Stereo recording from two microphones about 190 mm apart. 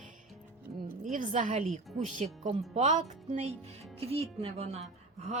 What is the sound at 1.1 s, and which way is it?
Speech, 40° right (ahead or behind).